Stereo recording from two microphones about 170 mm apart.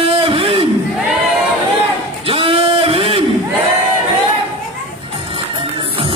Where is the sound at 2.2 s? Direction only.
35° right (ahead or behind).